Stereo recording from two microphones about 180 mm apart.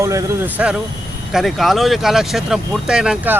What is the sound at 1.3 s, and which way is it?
Speech, centre (ahead or behind).